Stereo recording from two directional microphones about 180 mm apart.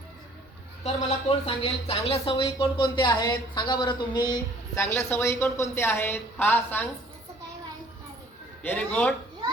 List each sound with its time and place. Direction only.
0.9 s speech: 30° left (ahead or behind); by 6.8 s 10° left (ahead or behind)
8.6 s speech: 10° left (ahead or behind)